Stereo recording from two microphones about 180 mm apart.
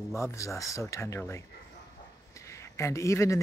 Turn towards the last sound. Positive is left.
turn(degrees=15)  # may be behind; listen again after turning